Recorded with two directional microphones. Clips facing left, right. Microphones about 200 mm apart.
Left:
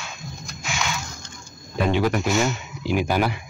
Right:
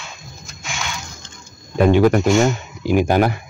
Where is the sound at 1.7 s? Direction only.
50° right (ahead or behind).